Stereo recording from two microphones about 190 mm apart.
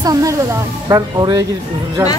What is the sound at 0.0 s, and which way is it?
Speech, 20° right (ahead or behind).